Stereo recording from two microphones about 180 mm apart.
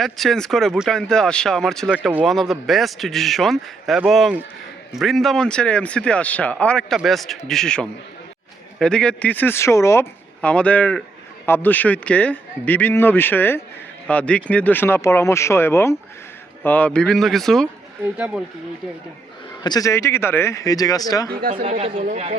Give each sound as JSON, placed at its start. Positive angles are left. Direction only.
{"t": 0.0, "sound": "speech", "side_deg": 0}
{"t": 19.6, "sound": "speech", "side_deg": 20}
{"t": 21.9, "sound": "speech", "side_deg": -50}